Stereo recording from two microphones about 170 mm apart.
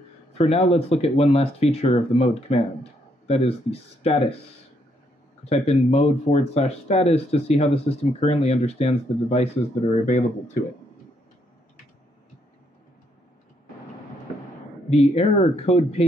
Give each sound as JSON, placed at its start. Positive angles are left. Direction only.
{"t": 0.3, "sound": "speech", "side_deg": 35}
{"t": 5.4, "sound": "speech", "side_deg": 40}
{"t": 14.9, "sound": "speech", "side_deg": 35}